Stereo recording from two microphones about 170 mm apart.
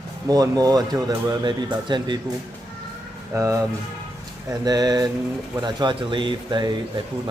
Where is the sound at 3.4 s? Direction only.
20° right (ahead or behind).